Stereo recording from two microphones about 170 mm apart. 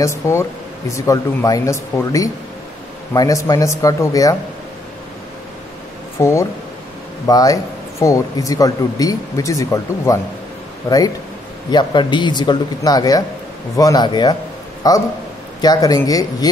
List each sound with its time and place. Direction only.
0.0 s speech: 15° left (ahead or behind)
6.1 s speech: 15° left (ahead or behind)
11.7 s speech: 25° left (ahead or behind)